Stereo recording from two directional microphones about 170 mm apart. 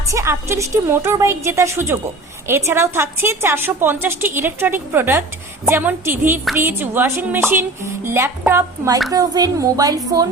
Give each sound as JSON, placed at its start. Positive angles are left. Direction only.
{"t": 0.1, "sound": "a woman's voice", "side_deg": -15}